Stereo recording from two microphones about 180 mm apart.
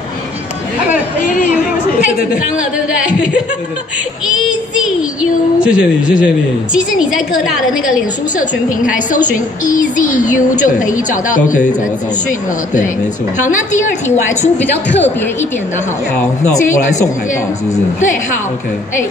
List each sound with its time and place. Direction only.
5.6 s a woman's voice: 5° right (ahead or behind)
8.4 s a woman's voice: 45° left (ahead or behind)
13.4 s a woman's voice: 45° left (ahead or behind)